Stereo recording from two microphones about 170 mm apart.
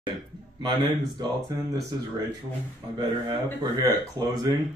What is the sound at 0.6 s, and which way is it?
Speech, 25° right (ahead or behind).